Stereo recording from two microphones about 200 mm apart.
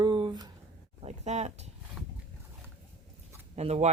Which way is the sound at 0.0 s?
20° right (ahead or behind).